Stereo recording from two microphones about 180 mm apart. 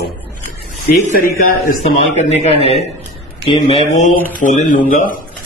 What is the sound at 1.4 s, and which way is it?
Speech, 50° left (ahead or behind).